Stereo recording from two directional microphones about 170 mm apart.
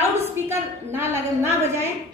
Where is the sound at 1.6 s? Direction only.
15° right (ahead or behind).